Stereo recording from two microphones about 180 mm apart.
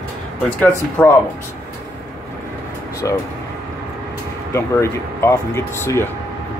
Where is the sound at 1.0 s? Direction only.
5° left (ahead or behind).